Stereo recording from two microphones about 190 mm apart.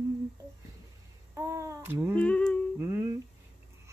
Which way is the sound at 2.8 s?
15° right (ahead or behind).